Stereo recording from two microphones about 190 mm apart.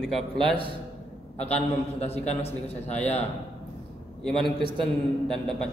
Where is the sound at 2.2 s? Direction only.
35° left (ahead or behind).